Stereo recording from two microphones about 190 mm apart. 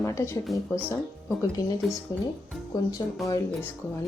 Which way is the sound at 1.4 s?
20° left (ahead or behind).